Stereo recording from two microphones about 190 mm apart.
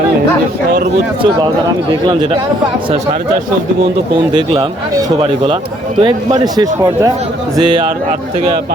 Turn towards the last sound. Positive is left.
turn(degrees=-25)  # may be behind; listen again after turning